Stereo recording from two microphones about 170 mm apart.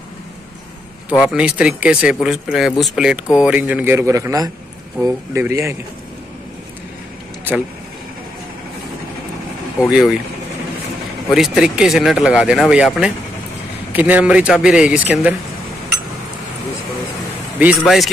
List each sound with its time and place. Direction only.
1.2 s speech: 5° right (ahead or behind)
9.8 s speech: 5° right (ahead or behind)
11.3 s speech: centre (ahead or behind)
17.6 s speech: 5° right (ahead or behind)